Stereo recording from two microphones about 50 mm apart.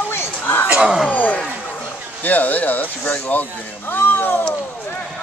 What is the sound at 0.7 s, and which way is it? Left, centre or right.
Speech, centre.